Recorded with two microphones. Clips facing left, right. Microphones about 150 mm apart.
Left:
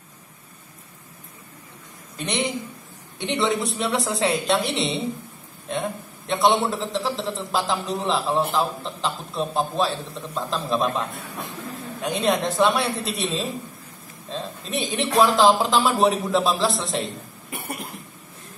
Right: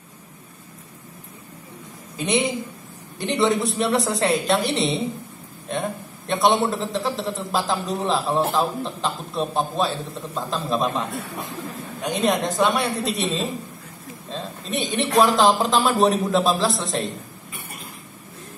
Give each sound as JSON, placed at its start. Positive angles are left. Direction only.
{"t": 2.1, "sound": "a man's voice", "side_deg": 0}
{"t": 17.5, "sound": "cough", "side_deg": 75}